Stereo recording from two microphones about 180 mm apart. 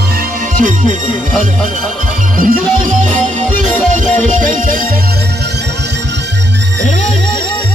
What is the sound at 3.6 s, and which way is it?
Music, centre (ahead or behind).